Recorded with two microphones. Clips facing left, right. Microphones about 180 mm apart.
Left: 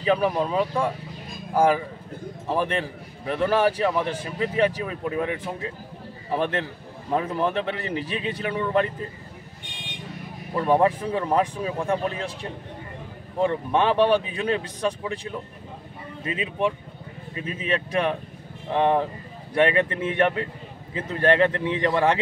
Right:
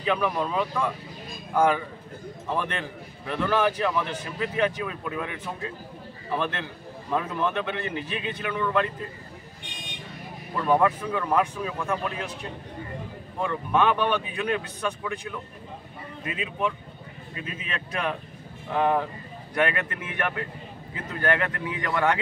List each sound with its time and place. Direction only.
0.4 s a man's voice: 30° left (ahead or behind)
10.5 s a man's voice: 30° left (ahead or behind)
13.4 s a man's voice: 30° left (ahead or behind)
17.5 s a man's voice: 35° left (ahead or behind)